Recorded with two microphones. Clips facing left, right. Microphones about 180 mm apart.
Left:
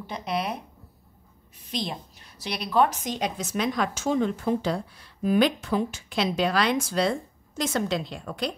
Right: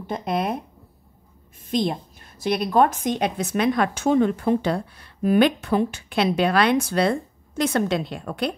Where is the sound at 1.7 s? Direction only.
50° right (ahead or behind).